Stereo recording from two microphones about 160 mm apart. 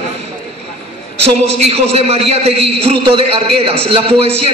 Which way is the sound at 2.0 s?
40° right (ahead or behind).